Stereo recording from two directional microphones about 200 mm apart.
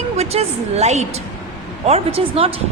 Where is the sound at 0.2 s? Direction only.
30° right (ahead or behind).